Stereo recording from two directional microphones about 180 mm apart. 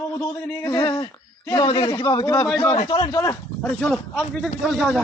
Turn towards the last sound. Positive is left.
turn(degrees=0)  # may be behind; listen again after turning